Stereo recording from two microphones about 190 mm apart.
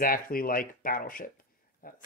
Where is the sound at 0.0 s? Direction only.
50° left (ahead or behind).